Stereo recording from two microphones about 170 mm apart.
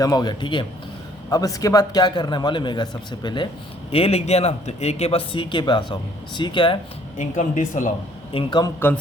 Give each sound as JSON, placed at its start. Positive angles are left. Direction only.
{"t": 0.0, "sound": "a man's voice", "side_deg": 25}
{"t": 3.9, "sound": "speech", "side_deg": 35}
{"t": 7.2, "sound": "speech", "side_deg": 45}
{"t": 8.3, "sound": "a man's voice", "side_deg": 30}